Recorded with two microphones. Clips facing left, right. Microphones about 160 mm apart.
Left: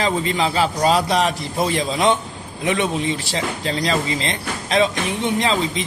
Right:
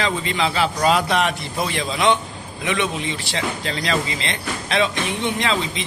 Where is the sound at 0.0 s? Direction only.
40° left (ahead or behind).